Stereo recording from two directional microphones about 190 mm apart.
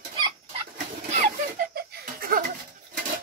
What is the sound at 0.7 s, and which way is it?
Laughter, 45° right (ahead or behind).